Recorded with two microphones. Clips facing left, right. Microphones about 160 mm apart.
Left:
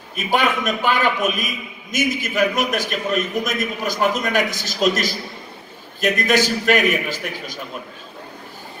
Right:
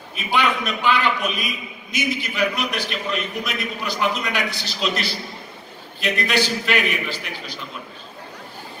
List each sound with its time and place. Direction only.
0.1 s a man's voice: 45° left (ahead or behind)